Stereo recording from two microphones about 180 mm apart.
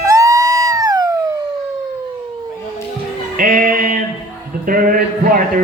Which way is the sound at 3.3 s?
50° right (ahead or behind).